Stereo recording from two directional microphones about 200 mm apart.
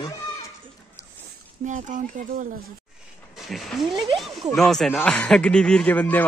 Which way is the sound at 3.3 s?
Centre (ahead or behind).